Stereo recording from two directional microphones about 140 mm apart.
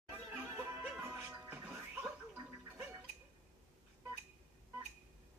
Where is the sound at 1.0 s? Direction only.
15° right (ahead or behind).